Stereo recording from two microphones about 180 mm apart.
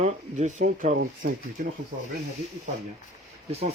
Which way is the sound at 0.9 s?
55° right (ahead or behind).